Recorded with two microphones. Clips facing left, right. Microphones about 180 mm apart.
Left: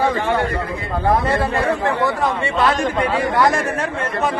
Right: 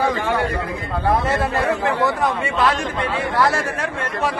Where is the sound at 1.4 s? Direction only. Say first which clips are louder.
Left 1 dB; centre (ahead or behind).